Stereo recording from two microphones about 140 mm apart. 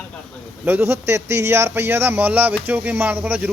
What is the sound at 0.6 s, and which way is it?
Speech, 15° right (ahead or behind).